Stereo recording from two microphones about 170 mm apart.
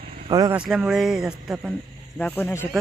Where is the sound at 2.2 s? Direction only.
10° left (ahead or behind).